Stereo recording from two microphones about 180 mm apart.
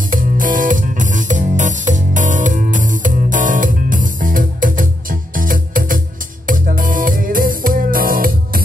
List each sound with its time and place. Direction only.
0.1 s music: 50° right (ahead or behind)